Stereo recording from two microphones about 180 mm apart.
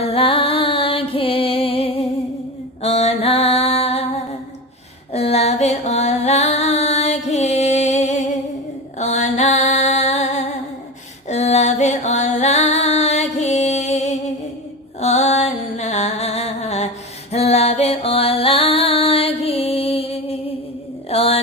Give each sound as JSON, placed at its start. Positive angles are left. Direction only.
{"t": 0.0, "sound": "music", "side_deg": 30}
{"t": 2.8, "sound": "a sound", "side_deg": 35}
{"t": 5.1, "sound": "music", "side_deg": 35}
{"t": 8.9, "sound": "female singing", "side_deg": 40}
{"t": 11.2, "sound": "music", "side_deg": 40}
{"t": 15.0, "sound": "a sound", "side_deg": 40}